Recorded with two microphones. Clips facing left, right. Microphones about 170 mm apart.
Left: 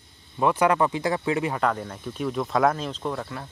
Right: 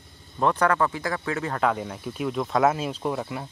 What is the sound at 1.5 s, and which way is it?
Speech, 5° right (ahead or behind).